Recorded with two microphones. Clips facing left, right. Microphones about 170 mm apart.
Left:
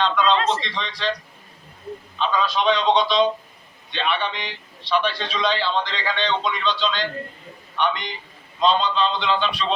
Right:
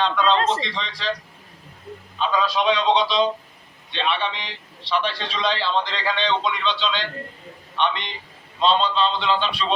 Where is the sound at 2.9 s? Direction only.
30° right (ahead or behind).